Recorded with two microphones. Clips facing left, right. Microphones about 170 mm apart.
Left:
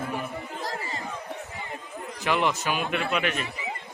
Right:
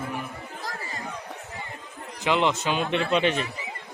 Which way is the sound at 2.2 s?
20° right (ahead or behind).